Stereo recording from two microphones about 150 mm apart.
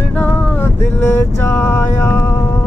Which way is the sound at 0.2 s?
15° left (ahead or behind).